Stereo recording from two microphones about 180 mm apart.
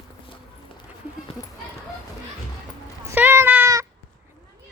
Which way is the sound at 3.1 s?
10° right (ahead or behind).